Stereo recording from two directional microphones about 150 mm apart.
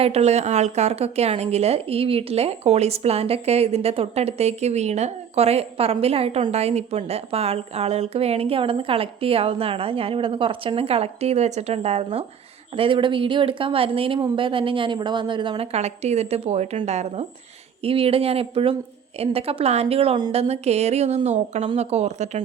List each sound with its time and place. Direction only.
0.0 s a woman's voice: 45° right (ahead or behind)
20.3 s a woman's voice: 45° right (ahead or behind)